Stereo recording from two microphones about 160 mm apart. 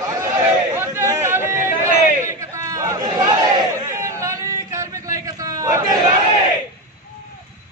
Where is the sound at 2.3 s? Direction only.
20° right (ahead or behind).